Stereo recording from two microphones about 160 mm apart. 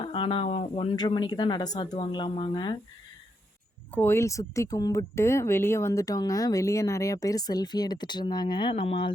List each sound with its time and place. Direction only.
0.0 s speech: 35° left (ahead or behind)
0.9 s speech: 25° left (ahead or behind)
3.9 s speech: 15° left (ahead or behind); by 9.1 s 35° left (ahead or behind)